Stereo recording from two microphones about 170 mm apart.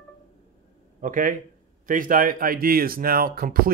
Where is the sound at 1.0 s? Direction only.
50° right (ahead or behind).